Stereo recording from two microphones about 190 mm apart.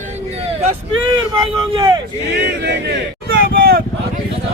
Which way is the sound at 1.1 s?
20° right (ahead or behind).